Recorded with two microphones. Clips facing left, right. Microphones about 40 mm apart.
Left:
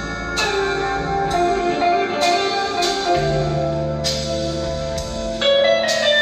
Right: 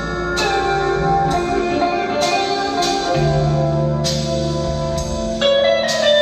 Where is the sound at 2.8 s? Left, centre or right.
Left.